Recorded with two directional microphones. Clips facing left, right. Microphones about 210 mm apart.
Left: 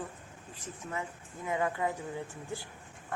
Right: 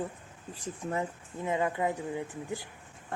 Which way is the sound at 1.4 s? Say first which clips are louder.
Right 2 dB; 20° right (ahead or behind).